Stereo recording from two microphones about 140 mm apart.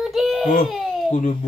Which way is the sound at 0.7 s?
Centre (ahead or behind).